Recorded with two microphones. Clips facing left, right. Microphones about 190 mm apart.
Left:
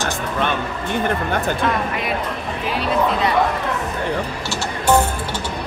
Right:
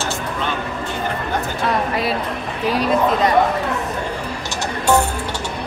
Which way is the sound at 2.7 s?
40° right (ahead or behind).